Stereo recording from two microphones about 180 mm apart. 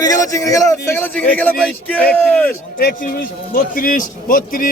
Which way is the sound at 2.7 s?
55° left (ahead or behind).